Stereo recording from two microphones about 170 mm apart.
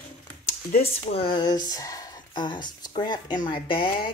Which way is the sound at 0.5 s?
55° left (ahead or behind).